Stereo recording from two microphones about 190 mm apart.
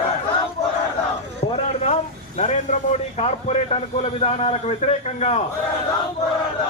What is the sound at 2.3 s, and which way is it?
A man's voice, 40° left (ahead or behind).